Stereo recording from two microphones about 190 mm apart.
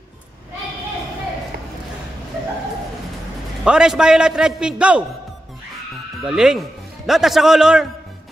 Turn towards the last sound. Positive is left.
turn(degrees=-5)  # may be behind; listen again after turning